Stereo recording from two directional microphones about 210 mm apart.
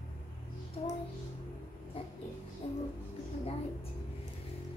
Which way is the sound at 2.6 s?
25° left (ahead or behind).